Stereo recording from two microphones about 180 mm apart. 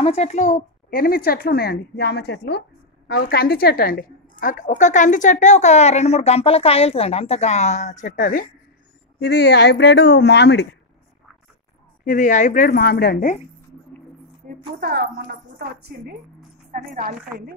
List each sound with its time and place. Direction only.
0.0 s a woman's voice: 35° left (ahead or behind)
0.8 s a woman's voice: 55° left (ahead or behind)
9.2 s a woman's voice: 70° left (ahead or behind)
12.0 s a woman's voice: 45° left (ahead or behind)
14.4 s a sound: 45° right (ahead or behind)
14.8 s a woman's voice: 65° right (ahead or behind)
16.7 s a woman's voice: 50° right (ahead or behind)